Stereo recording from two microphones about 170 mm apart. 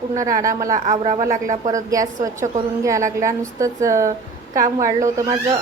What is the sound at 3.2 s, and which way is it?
A woman's voice, 20° right (ahead or behind).